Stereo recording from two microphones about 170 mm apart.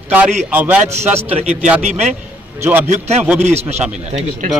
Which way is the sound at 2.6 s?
10° right (ahead or behind).